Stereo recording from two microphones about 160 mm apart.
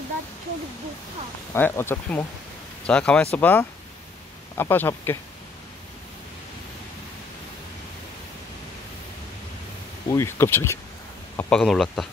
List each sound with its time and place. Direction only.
1.5 s speech: 15° left (ahead or behind)
10.0 s speech: 20° left (ahead or behind)
11.6 s speech: centre (ahead or behind)